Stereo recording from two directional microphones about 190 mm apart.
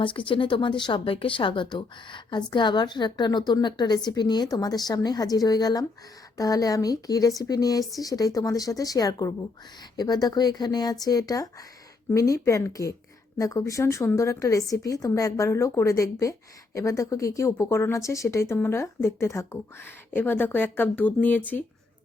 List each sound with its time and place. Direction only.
0.0 s speech: 25° left (ahead or behind); by 21.6 s 10° left (ahead or behind)